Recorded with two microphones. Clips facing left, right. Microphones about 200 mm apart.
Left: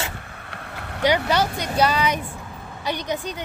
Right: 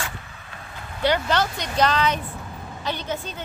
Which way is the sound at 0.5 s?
65° left (ahead or behind).